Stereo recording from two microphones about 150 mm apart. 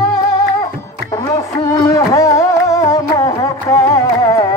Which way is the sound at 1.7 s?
20° left (ahead or behind).